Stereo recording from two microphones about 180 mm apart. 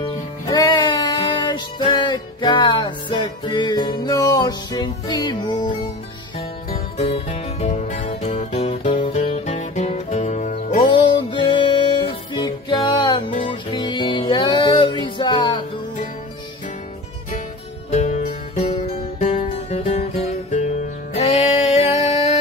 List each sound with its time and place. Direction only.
0.5 s music: 25° left (ahead or behind)
7.0 s music: 35° left (ahead or behind)
10.9 s music: 25° left (ahead or behind)
18.0 s music: 40° left (ahead or behind)
21.2 s a sound: 35° left (ahead or behind)